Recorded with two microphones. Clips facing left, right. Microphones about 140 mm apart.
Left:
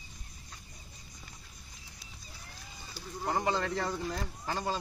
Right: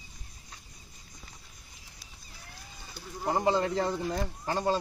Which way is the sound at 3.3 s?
25° right (ahead or behind).